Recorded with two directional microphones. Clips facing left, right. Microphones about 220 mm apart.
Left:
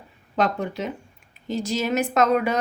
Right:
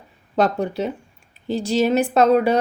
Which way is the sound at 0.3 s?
35° right (ahead or behind).